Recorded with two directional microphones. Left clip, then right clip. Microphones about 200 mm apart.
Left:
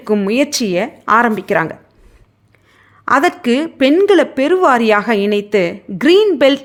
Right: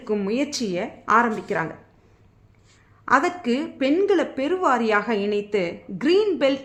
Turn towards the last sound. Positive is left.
turn(degrees=35)  # may be behind; listen again after turning